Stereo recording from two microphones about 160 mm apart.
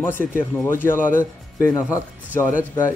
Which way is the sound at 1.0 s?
55° left (ahead or behind).